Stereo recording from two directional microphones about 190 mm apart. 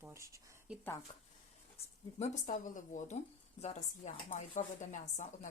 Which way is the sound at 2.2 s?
40° left (ahead or behind).